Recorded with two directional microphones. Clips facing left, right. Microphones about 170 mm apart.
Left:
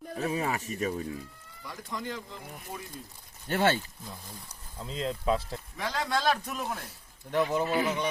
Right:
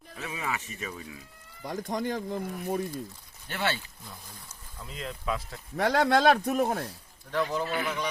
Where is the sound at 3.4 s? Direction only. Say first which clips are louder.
Left 5 dB; 45° left (ahead or behind).